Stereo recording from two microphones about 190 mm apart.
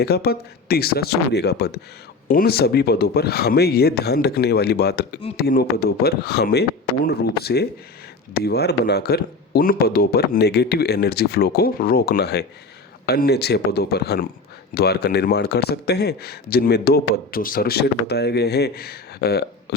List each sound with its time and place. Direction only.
0.0 s speech: 55° left (ahead or behind)